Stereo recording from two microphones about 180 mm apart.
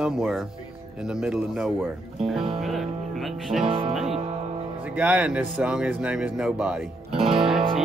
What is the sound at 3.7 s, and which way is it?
Music, 30° right (ahead or behind).